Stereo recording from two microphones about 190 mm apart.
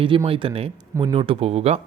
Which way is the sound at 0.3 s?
30° right (ahead or behind).